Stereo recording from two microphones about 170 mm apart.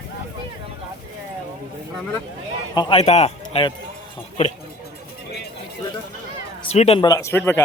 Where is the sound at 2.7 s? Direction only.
35° left (ahead or behind).